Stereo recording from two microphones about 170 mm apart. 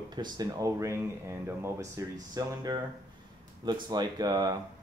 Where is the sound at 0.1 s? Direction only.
25° right (ahead or behind).